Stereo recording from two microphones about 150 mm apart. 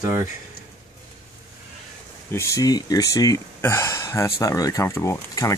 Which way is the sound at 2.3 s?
20° left (ahead or behind).